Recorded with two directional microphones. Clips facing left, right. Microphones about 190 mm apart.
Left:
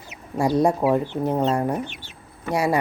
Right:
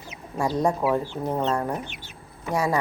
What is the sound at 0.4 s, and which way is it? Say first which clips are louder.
Speech: left 4 dB; 10° left (ahead or behind).